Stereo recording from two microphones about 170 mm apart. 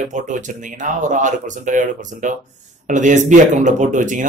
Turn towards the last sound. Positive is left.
turn(degrees=-50)  # may be behind; listen again after turning